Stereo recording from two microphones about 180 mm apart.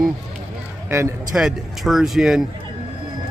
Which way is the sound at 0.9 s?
15° right (ahead or behind).